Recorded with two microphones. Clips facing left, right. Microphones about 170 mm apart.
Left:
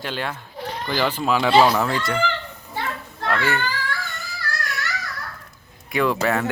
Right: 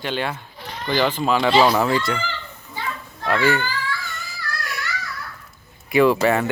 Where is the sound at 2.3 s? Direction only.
60° left (ahead or behind).